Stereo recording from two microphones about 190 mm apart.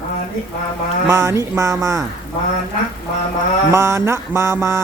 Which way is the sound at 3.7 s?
15° right (ahead or behind).